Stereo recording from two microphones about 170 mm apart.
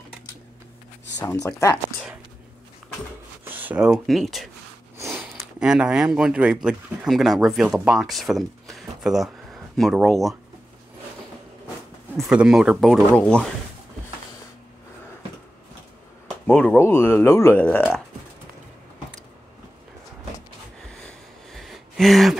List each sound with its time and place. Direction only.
1.2 s speech: 20° left (ahead or behind)
3.4 s speech: 10° right (ahead or behind)
4.9 s speech: 15° right (ahead or behind); by 10.3 s centre (ahead or behind)
12.2 s speech: 5° right (ahead or behind)
16.4 s speech: 5° left (ahead or behind)
20.9 s a sound: centre (ahead or behind)